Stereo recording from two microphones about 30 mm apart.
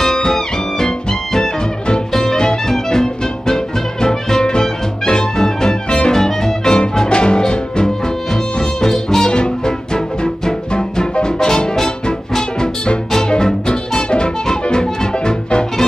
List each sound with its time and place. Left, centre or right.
0.0 s music: left
5.9 s music: left
6.1 s music: centre
9.3 s music: left
14.1 s music: left